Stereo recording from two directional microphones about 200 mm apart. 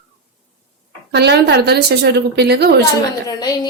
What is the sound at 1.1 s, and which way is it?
A woman's voice, 55° right (ahead or behind).